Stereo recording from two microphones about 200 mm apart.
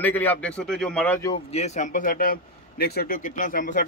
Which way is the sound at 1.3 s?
30° left (ahead or behind).